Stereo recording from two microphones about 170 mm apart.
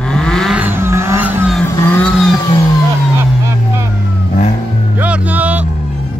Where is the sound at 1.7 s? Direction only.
15° left (ahead or behind).